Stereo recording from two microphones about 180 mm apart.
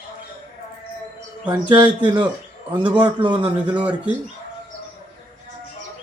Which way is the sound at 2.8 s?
25° right (ahead or behind).